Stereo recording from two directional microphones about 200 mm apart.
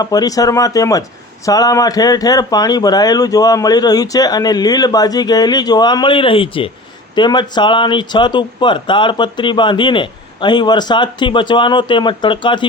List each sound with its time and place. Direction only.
0.0 s speech: 20° left (ahead or behind)